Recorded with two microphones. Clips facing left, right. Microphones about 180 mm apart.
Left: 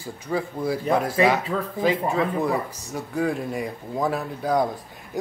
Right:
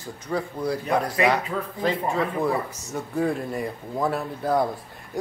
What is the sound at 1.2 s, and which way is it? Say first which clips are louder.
Speech: left 2 dB; 5° left (ahead or behind).